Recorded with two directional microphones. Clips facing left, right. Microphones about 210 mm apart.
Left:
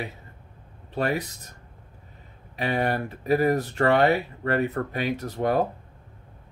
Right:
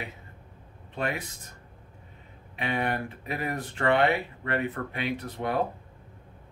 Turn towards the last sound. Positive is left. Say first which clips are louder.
# left 5 dB
turn(degrees=40)  # may be behind; listen again after turning